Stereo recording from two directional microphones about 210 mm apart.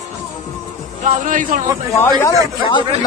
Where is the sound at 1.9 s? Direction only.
15° left (ahead or behind).